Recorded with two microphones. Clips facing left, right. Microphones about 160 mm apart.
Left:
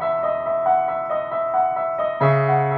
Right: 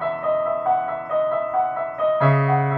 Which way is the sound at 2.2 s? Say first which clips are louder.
Left 5 dB; 25° left (ahead or behind).